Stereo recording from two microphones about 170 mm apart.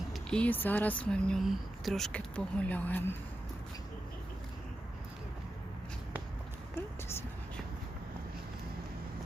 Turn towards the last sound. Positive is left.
turn(degrees=15)  # may be behind; listen again after turning